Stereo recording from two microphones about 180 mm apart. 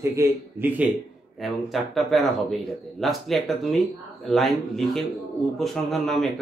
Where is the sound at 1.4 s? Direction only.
Centre (ahead or behind).